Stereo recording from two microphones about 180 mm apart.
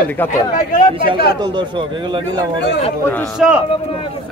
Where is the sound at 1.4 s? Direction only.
25° right (ahead or behind).